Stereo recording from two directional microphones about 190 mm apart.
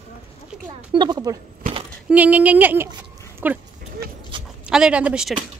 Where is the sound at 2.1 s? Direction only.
10° right (ahead or behind).